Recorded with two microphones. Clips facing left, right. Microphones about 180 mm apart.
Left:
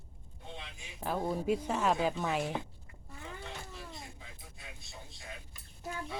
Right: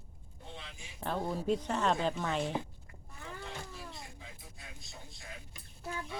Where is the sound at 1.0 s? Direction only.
10° left (ahead or behind).